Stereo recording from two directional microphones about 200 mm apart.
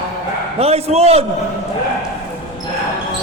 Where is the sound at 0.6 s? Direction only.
30° right (ahead or behind).